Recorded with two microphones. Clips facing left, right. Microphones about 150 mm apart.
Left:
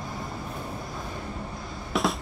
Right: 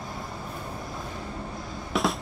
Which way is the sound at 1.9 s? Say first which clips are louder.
Even; centre (ahead or behind).